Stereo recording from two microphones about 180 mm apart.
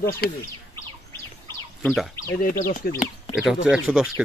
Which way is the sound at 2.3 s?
50° left (ahead or behind).